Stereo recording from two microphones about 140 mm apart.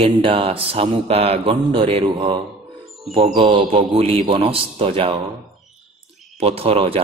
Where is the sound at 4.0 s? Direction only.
45° right (ahead or behind).